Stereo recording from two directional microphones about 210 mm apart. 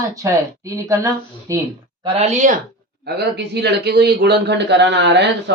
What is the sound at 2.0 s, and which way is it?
Speech, 30° right (ahead or behind).